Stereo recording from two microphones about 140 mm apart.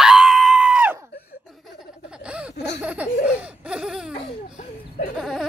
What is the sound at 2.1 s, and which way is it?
Laughter, 5° right (ahead or behind).